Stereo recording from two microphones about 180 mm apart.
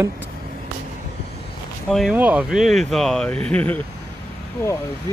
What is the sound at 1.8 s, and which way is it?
Speech, centre (ahead or behind).